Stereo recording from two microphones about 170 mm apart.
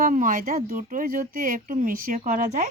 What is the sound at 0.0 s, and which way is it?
Speech, 50° right (ahead or behind).